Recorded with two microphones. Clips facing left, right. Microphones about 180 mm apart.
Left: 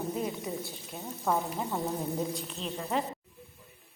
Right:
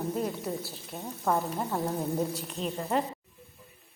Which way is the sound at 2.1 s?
10° right (ahead or behind).